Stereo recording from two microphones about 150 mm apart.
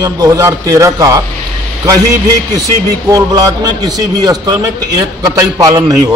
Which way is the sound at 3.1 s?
25° right (ahead or behind).